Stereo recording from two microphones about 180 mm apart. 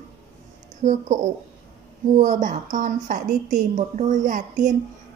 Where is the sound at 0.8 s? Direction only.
40° right (ahead or behind).